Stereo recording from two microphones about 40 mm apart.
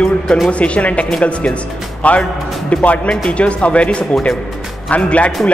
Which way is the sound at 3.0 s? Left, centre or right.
Left.